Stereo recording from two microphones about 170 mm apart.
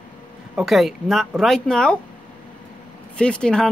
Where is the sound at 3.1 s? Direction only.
5° left (ahead or behind).